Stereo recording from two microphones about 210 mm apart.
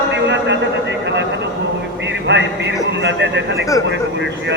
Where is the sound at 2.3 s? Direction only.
55° right (ahead or behind).